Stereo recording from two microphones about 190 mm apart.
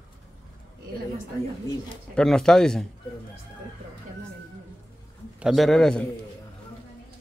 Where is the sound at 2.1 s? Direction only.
5° left (ahead or behind).